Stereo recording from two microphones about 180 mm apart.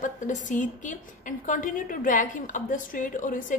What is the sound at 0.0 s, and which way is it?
A woman's voice, 45° left (ahead or behind).